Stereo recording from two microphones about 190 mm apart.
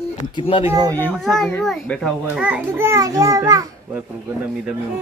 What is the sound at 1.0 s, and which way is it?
A child's voice, centre (ahead or behind).